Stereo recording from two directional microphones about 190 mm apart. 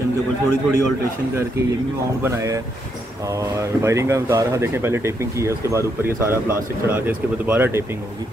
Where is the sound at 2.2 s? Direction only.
15° right (ahead or behind).